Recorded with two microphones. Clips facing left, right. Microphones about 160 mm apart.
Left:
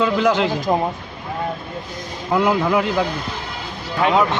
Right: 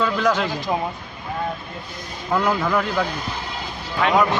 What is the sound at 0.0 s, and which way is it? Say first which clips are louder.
Speech: left 3 dB; 10° left (ahead or behind).